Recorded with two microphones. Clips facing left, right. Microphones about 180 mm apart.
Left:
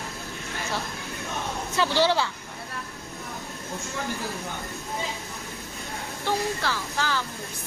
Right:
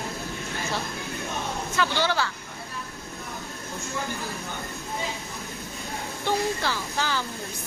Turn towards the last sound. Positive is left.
turn(degrees=0)  # may be behind; listen again after turning